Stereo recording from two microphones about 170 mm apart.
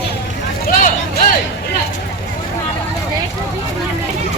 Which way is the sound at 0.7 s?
50° left (ahead or behind).